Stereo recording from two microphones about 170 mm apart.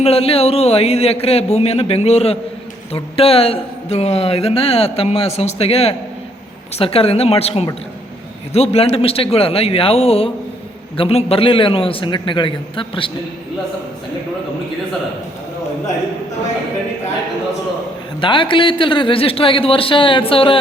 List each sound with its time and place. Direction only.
0.0 s a man's voice: 35° left (ahead or behind)
18.2 s a man's voice: 30° left (ahead or behind)